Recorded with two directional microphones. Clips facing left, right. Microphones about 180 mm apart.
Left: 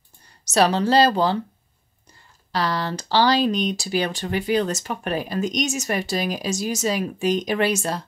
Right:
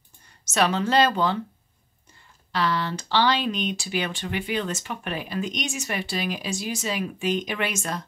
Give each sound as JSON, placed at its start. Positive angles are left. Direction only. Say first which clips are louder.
{"t": 0.5, "sound": "speech", "louder": "left 4 dB", "side_deg": 35}
{"t": 2.5, "sound": "speech", "louder": "left 1 dB", "side_deg": 40}